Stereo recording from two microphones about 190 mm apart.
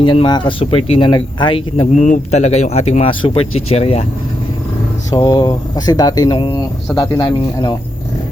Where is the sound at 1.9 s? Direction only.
40° left (ahead or behind).